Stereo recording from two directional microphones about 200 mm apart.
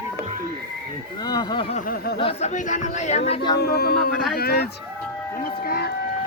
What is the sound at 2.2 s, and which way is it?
Speech, 30° left (ahead or behind).